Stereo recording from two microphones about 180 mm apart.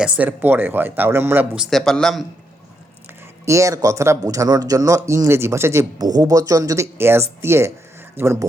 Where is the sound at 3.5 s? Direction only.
15° right (ahead or behind).